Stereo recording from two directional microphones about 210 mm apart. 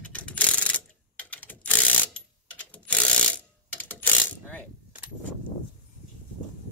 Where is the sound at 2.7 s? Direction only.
5° left (ahead or behind).